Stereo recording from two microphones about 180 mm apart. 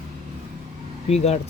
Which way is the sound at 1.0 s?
35° left (ahead or behind).